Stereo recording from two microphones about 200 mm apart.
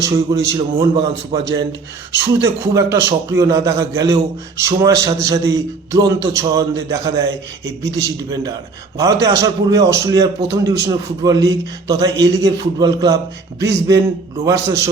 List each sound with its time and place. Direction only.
0.0 s a man's voice: 15° right (ahead or behind)